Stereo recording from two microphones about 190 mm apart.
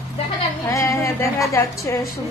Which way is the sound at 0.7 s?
15° left (ahead or behind).